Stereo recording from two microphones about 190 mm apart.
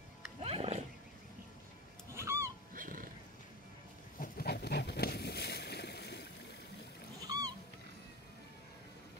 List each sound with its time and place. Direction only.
0.4 s wild animals: 30° right (ahead or behind)
2.1 s honk: 15° right (ahead or behind)
2.7 s wild animals: 45° right (ahead or behind)
4.2 s boat: 55° left (ahead or behind)
7.2 s cat: 20° right (ahead or behind)